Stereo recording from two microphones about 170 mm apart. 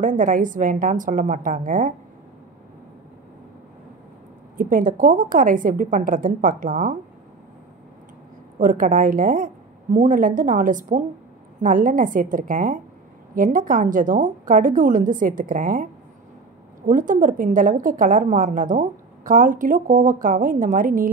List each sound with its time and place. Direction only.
0.2 s a woman's voice: 50° right (ahead or behind)
4.6 s a woman's voice: 50° right (ahead or behind)
8.5 s a woman's voice: 50° right (ahead or behind)